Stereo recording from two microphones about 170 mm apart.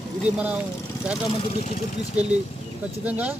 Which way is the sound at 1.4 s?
35° left (ahead or behind).